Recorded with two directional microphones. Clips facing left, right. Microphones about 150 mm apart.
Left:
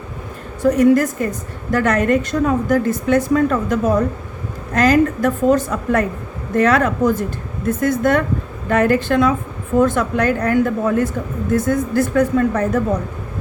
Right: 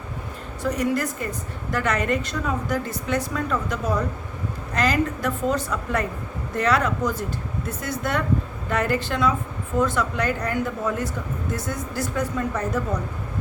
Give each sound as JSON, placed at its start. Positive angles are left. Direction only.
{"t": 0.6, "sound": "a woman's voice", "side_deg": 50}